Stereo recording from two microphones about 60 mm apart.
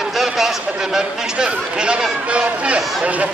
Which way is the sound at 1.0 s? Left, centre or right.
Centre.